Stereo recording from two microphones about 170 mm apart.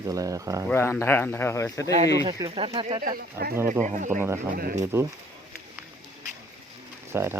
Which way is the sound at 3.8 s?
45° right (ahead or behind).